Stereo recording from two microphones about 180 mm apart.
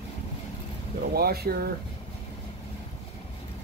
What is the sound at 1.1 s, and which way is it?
Speech, 60° right (ahead or behind).